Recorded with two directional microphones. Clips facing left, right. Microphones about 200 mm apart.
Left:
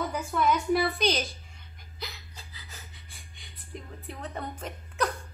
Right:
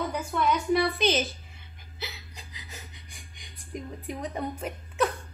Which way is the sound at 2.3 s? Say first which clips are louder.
Right 3 dB; 15° right (ahead or behind).